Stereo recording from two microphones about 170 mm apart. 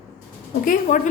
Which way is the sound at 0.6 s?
55° left (ahead or behind).